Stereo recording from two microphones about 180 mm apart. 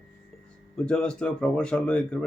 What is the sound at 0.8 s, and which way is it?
Speech, 5° left (ahead or behind).